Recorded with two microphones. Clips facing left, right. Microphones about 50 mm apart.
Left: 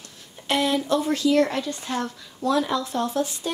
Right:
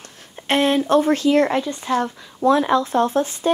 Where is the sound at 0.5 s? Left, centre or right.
Right.